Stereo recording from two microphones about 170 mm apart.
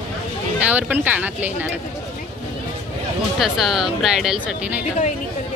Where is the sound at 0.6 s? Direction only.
10° right (ahead or behind).